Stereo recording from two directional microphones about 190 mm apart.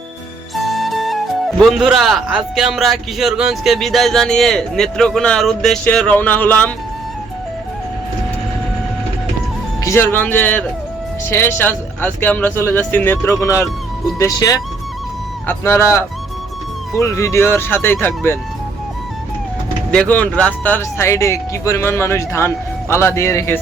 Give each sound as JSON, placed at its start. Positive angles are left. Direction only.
{"t": 0.5, "sound": "speech", "side_deg": 0}
{"t": 9.8, "sound": "speech", "side_deg": 15}
{"t": 19.9, "sound": "speech", "side_deg": 5}